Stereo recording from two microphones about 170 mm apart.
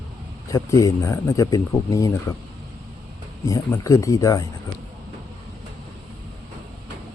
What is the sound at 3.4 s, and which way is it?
Speech, 20° left (ahead or behind).